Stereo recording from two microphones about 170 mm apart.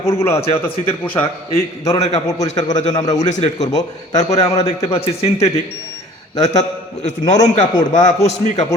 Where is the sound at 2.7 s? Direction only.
45° left (ahead or behind).